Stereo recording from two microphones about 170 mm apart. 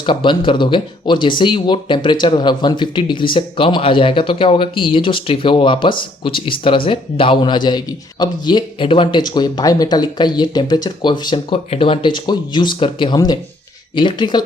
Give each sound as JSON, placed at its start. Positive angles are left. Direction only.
{"t": 0.0, "sound": "a man's voice", "side_deg": 30}